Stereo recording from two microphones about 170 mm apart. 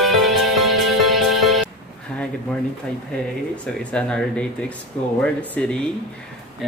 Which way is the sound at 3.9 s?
5° left (ahead or behind).